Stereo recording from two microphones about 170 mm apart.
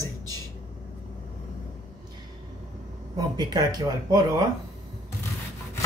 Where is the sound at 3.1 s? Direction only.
25° right (ahead or behind).